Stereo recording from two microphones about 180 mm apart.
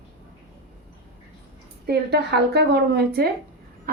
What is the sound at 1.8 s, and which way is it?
A woman's voice, 65° right (ahead or behind).